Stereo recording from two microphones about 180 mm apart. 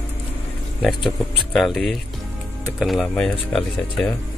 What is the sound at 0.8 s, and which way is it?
Speech, centre (ahead or behind).